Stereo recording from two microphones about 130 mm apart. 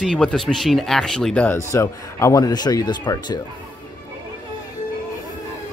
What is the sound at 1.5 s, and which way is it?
Speech, 20° left (ahead or behind).